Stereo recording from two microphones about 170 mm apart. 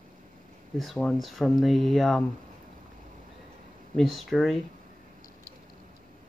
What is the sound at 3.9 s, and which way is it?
Speech, centre (ahead or behind).